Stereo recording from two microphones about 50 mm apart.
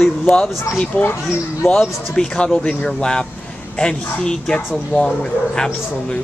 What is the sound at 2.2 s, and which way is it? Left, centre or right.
Speech, centre.